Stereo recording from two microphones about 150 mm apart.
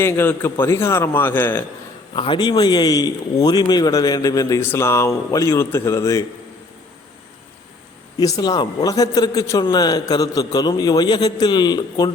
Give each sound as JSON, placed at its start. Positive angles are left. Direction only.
{"t": 0.0, "sound": "a man's voice", "side_deg": 15}
{"t": 2.1, "sound": "speech", "side_deg": 30}
{"t": 8.2, "sound": "speech", "side_deg": 25}